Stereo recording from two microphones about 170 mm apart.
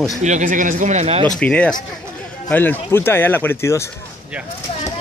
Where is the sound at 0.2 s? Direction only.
45° right (ahead or behind).